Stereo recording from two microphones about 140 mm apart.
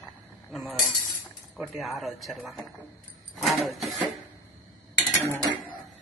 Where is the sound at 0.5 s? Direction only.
Centre (ahead or behind).